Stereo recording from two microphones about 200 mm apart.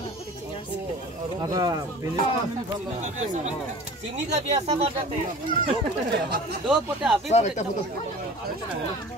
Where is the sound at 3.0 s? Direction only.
35° right (ahead or behind).